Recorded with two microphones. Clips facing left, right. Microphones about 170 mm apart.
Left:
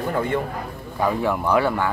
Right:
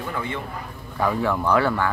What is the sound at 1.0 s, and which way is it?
Speech, 15° left (ahead or behind).